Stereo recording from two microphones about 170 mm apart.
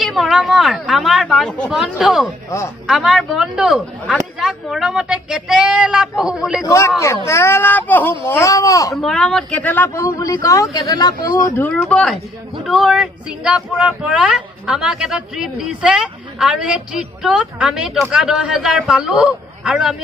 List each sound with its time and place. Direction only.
0.0 s speech: centre (ahead or behind)
6.6 s speech: 15° left (ahead or behind)
8.9 s speech: 5° left (ahead or behind); by 11.1 s 25° left (ahead or behind)
11.9 s speech: centre (ahead or behind)